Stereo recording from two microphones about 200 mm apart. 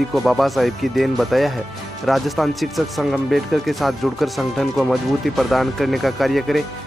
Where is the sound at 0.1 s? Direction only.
Centre (ahead or behind).